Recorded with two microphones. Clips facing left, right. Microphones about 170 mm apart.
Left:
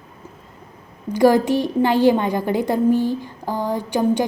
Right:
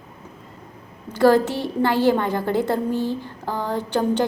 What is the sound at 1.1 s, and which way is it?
A woman's voice, 15° left (ahead or behind).